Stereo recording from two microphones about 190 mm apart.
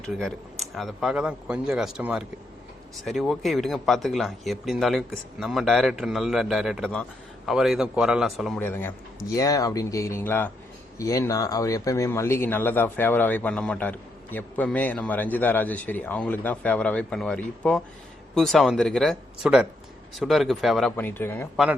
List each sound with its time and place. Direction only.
0.0 s speech: 5° left (ahead or behind)
8.6 s speech: 10° left (ahead or behind)
20.9 s speech: 10° left (ahead or behind)